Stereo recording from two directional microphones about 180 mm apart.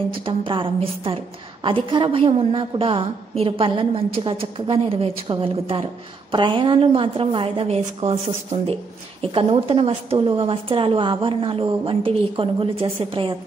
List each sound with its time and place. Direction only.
0.1 s a woman's voice: 30° right (ahead or behind)